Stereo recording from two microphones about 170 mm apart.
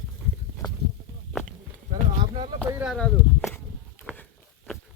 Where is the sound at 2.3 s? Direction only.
30° right (ahead or behind).